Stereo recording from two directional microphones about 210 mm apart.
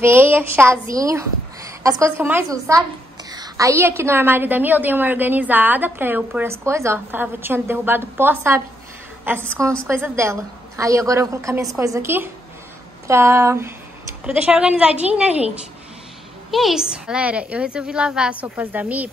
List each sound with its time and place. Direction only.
0.0 s a woman's voice: 10° right (ahead or behind)
16.4 s a woman's voice: centre (ahead or behind)